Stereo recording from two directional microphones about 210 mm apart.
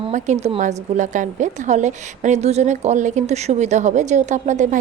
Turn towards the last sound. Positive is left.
turn(degrees=-35)  # may be behind; listen again after turning